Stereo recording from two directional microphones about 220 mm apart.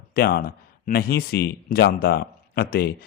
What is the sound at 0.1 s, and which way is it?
Speech, 45° left (ahead or behind).